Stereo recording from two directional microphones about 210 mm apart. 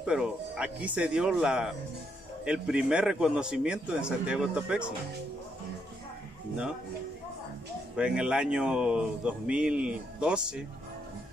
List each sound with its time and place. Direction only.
0.0 s speech: 5° right (ahead or behind)
7.9 s speech: 5° right (ahead or behind)